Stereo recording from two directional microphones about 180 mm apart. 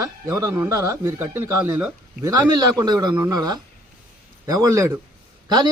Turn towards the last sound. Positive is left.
turn(degrees=-25)  # may be behind; listen again after turning